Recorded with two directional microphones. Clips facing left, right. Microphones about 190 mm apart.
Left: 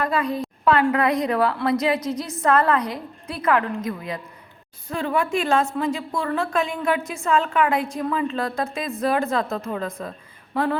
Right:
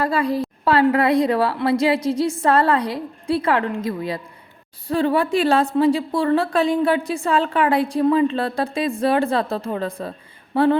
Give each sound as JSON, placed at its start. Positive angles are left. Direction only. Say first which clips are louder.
{"t": 0.0, "sound": "a woman's voice", "louder": "right 3 dB", "side_deg": -35}